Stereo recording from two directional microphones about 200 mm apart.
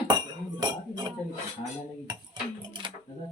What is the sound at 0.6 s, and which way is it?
Cutlery, 20° right (ahead or behind).